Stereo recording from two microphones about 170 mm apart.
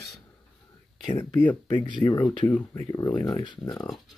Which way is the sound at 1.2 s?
10° left (ahead or behind).